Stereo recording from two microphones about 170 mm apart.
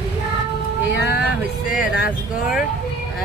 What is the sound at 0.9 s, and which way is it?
Music, 75° left (ahead or behind).